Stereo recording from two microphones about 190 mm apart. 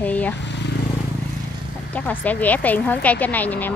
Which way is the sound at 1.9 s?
10° left (ahead or behind).